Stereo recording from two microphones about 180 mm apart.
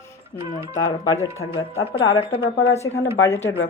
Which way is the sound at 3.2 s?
90° left.